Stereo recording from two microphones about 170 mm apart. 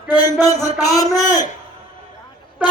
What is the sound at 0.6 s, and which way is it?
Speech, 20° left (ahead or behind).